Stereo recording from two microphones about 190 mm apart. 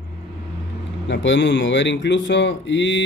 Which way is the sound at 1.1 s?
70° left (ahead or behind).